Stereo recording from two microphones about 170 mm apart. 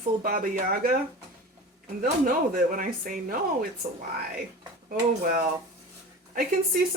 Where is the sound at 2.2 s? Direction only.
55° right (ahead or behind).